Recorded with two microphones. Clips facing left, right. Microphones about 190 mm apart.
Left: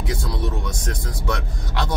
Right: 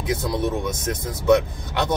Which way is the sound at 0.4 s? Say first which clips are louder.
Right 4 dB; 20° right (ahead or behind).